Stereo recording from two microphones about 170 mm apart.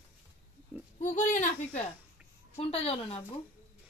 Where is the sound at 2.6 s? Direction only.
35° left (ahead or behind).